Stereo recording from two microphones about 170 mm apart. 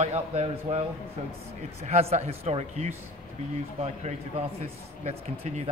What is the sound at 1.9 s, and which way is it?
A man's voice, 40° right (ahead or behind).